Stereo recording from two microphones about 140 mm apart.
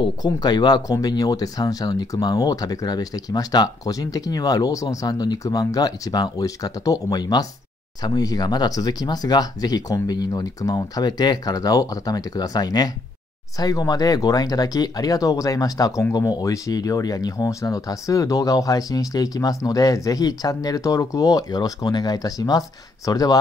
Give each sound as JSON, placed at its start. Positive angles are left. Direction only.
{"t": 0.0, "sound": "speech", "side_deg": 30}